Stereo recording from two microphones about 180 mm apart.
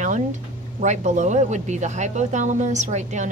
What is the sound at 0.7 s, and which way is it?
Speech, 40° right (ahead or behind).